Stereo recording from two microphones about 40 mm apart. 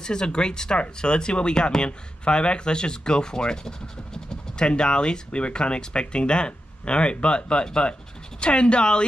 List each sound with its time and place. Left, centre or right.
0.0 s speech: centre